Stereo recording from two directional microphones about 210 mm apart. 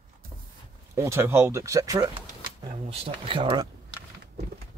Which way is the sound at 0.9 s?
15° right (ahead or behind).